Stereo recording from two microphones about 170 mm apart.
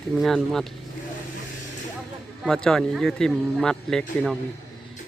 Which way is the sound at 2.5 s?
5° left (ahead or behind).